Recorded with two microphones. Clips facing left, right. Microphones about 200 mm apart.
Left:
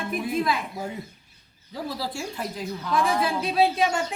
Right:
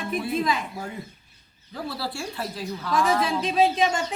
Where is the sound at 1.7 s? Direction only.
15° left (ahead or behind).